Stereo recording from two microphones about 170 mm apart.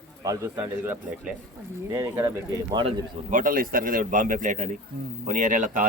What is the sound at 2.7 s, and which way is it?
Speech, 30° right (ahead or behind).